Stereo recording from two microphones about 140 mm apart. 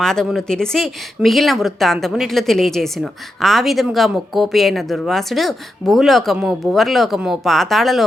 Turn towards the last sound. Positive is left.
turn(degrees=0)  # may be behind; listen again after turning